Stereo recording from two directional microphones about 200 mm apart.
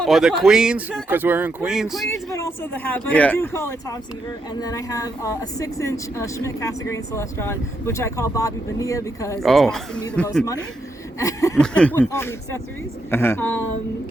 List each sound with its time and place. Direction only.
0.0 s speech: centre (ahead or behind)
2.3 s a woman's voice: 10° left (ahead or behind)
9.4 s speech: centre (ahead or behind)
11.2 s a woman's voice: 15° left (ahead or behind)